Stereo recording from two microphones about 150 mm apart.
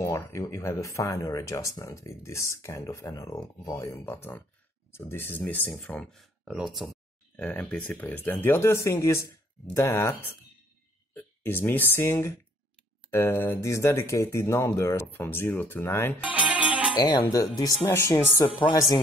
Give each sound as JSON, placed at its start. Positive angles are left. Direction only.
{"t": 0.0, "sound": "speech", "side_deg": 20}
{"t": 7.3, "sound": "speech", "side_deg": 10}
{"t": 16.2, "sound": "music", "side_deg": -10}
{"t": 17.2, "sound": "speech", "side_deg": 25}